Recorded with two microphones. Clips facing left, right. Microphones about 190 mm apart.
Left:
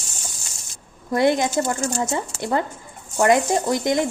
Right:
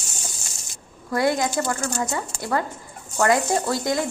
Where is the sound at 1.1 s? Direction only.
20° left (ahead or behind).